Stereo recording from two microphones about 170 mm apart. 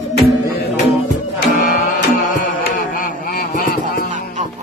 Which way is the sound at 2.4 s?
55° left (ahead or behind).